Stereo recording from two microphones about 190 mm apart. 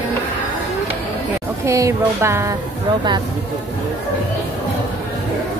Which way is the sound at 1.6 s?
15° right (ahead or behind).